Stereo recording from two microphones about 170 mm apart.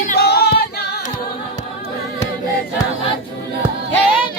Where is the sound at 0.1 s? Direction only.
70° left (ahead or behind).